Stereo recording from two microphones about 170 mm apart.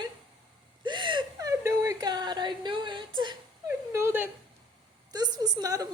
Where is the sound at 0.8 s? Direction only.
30° right (ahead or behind).